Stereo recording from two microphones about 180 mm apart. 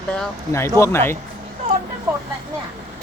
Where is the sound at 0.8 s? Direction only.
15° left (ahead or behind).